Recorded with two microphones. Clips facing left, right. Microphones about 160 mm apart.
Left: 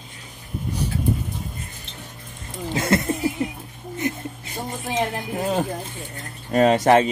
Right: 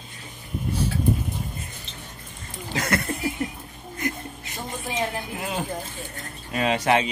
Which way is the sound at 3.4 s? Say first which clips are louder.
Left 3 dB; 15° left (ahead or behind).